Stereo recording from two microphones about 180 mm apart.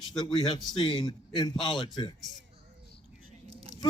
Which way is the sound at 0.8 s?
25° left (ahead or behind).